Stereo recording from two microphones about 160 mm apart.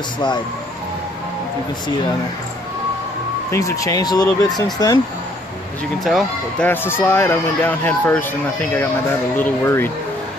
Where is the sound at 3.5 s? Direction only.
20° left (ahead or behind).